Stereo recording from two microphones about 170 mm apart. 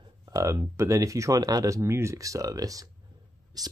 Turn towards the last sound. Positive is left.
turn(degrees=-20)  # may be behind; listen again after turning